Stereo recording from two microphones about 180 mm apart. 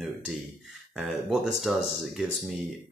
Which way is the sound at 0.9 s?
Centre (ahead or behind).